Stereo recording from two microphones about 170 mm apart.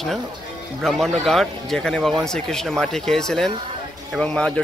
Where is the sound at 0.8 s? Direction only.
5° left (ahead or behind).